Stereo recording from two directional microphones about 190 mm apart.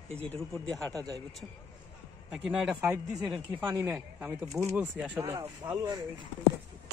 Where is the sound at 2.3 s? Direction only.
5° right (ahead or behind).